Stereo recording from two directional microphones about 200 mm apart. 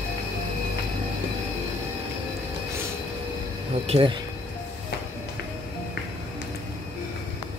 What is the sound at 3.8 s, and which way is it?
Speech, 25° right (ahead or behind).